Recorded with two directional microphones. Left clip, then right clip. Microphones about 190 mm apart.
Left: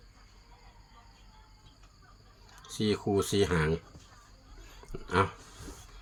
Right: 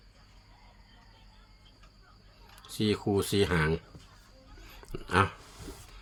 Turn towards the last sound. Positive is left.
turn(degrees=-15)  # may be behind; listen again after turning